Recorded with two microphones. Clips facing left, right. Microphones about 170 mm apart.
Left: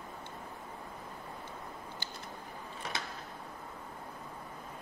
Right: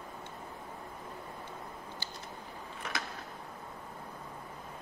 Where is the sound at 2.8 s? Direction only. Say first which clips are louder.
Right 1 dB; 25° left (ahead or behind).